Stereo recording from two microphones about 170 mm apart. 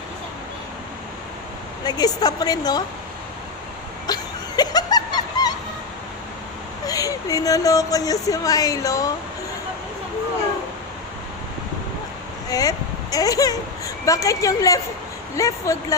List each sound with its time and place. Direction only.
1.8 s speech: 25° left (ahead or behind)
4.0 s a sound: 25° left (ahead or behind)
6.8 s speech: 20° left (ahead or behind)
12.5 s a woman's voice: 20° left (ahead or behind)